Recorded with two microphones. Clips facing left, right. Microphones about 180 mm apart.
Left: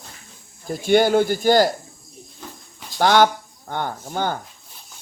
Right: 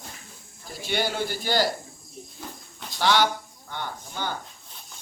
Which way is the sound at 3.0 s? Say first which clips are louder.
Left 6 dB; 50° left (ahead or behind).